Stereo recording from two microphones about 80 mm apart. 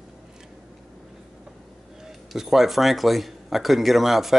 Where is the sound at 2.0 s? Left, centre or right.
Centre.